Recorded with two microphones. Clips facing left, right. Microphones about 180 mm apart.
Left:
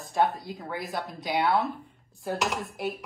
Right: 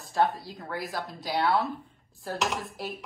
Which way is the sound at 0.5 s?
Centre (ahead or behind).